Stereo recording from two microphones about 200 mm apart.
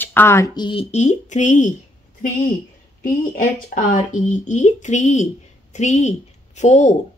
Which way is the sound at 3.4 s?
40° left (ahead or behind).